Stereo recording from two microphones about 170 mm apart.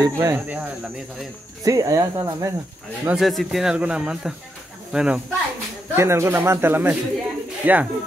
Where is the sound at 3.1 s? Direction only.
Centre (ahead or behind).